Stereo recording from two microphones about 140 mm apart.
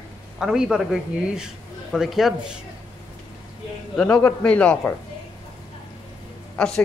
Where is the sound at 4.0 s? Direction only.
5° left (ahead or behind).